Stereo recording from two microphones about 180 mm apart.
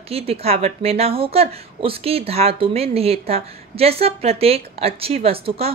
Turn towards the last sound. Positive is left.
turn(degrees=-35)  # may be behind; listen again after turning